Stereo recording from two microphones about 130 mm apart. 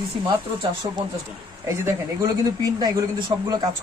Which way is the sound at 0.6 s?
30° right (ahead or behind).